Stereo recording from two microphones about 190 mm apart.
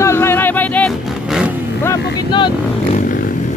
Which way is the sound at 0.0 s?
15° left (ahead or behind).